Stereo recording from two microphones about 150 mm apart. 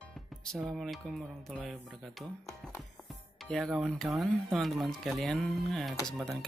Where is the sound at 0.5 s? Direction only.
Centre (ahead or behind).